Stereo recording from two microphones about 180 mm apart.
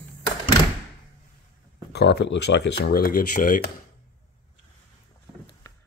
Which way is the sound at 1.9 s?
70° left (ahead or behind).